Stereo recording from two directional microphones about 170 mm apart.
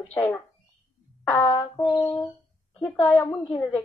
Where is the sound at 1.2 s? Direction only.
20° left (ahead or behind).